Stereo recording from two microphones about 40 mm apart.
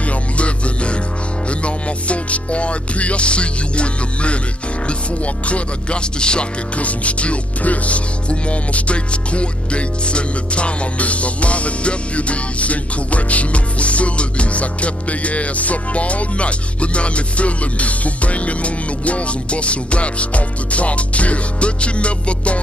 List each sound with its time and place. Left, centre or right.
0.0 s music: left
4.8 s speech: left
6.8 s music: left